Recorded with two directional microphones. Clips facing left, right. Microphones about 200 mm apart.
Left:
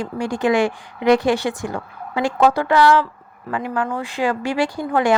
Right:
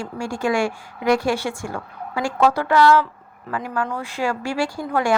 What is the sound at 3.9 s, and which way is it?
A woman's voice, 20° left (ahead or behind).